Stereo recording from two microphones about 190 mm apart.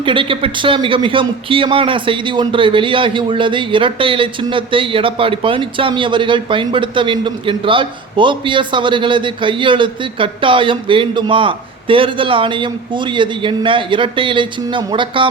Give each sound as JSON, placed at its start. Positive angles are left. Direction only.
{"t": 0.0, "sound": "a man's voice", "side_deg": -25}